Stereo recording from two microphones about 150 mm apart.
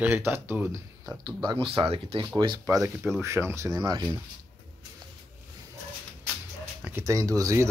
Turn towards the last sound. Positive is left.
turn(degrees=-20)  # may be behind; listen again after turning